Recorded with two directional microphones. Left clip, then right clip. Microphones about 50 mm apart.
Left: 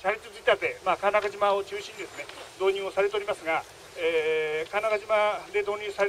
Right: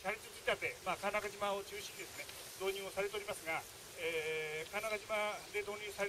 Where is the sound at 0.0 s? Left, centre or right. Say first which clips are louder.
Left 13 dB; centre.